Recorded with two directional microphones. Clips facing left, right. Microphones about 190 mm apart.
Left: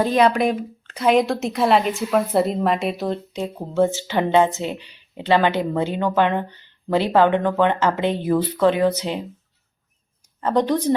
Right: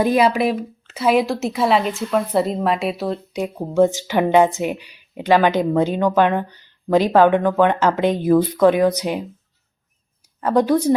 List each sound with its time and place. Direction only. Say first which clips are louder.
0.0 s speech: right 1 dB; 10° right (ahead or behind)
3.4 s speech: right 3 dB; 15° right (ahead or behind)
7.2 s speech: right 2 dB; 25° left (ahead or behind)
7.4 s speech: right 2 dB; 10° right (ahead or behind)
10.4 s speech: right 3 dB; 10° right (ahead or behind)